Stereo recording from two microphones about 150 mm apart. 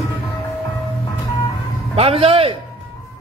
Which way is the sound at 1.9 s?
40° right (ahead or behind).